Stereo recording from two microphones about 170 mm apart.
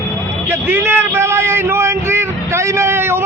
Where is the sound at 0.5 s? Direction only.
15° right (ahead or behind).